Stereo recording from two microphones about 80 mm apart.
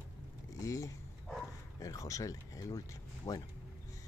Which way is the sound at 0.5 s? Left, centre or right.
Left.